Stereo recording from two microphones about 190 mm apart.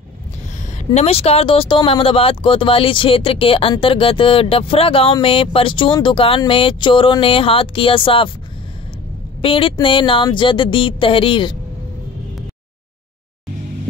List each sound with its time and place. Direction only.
0.9 s speech: 35° left (ahead or behind)
9.4 s speech: 30° left (ahead or behind)